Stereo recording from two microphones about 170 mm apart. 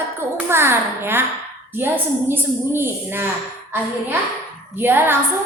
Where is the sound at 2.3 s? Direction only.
15° right (ahead or behind).